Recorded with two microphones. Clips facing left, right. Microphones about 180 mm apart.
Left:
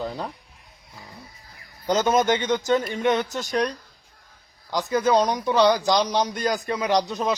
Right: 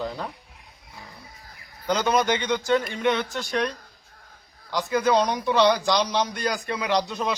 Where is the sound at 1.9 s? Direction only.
45° left (ahead or behind).